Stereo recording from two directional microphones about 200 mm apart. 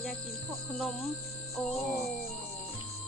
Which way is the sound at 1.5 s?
Centre (ahead or behind).